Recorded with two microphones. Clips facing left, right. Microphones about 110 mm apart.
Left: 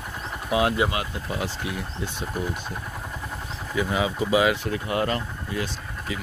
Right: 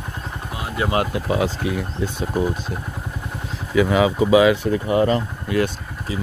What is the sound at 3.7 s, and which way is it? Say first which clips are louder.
Speech: right 9 dB; 90° right.